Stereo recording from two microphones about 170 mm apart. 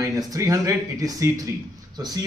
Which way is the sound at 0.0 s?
20° right (ahead or behind).